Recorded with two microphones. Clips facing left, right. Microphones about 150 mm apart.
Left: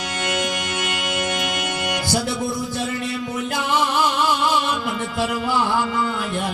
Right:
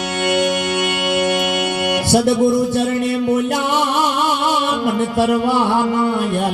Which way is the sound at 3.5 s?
65° right (ahead or behind).